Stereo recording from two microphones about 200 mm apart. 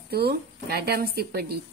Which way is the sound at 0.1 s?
50° right (ahead or behind).